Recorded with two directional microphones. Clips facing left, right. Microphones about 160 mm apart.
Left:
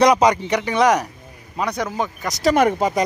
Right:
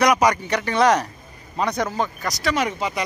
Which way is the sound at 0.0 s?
25° left (ahead or behind).